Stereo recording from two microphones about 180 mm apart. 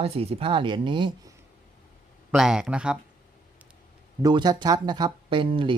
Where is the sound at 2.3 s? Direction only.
5° right (ahead or behind).